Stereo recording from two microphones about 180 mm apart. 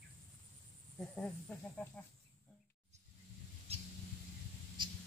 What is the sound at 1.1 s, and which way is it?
Speech, 5° left (ahead or behind).